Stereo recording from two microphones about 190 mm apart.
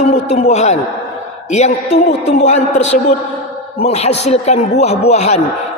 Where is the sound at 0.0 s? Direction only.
35° left (ahead or behind).